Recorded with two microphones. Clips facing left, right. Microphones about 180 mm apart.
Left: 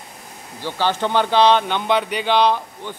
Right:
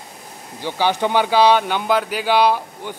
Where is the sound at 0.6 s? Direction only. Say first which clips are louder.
Right 2 dB; 15° right (ahead or behind).